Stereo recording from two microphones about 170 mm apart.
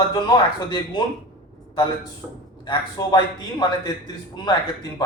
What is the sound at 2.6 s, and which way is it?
Speech, 25° left (ahead or behind).